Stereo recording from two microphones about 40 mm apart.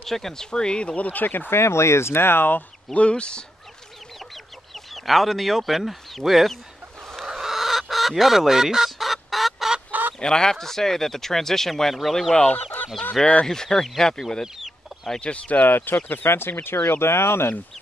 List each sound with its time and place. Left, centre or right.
0.0 s speech: centre
0.9 s speech: left
1.5 s speech: left
2.9 s speech: left
4.7 s speech: centre
7.2 s chicken: centre
9.8 s fowl: right
10.1 s speech: centre
12.5 s fowl: left
13.2 s speech: centre
15.1 s speech: left
15.6 s speech: left
16.3 s speech: left
16.9 s speech: left